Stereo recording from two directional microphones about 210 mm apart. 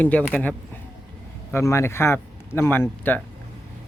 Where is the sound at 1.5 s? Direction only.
10° left (ahead or behind).